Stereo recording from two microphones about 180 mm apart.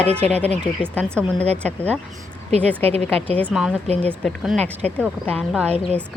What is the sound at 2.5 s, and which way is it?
Speech, 35° right (ahead or behind).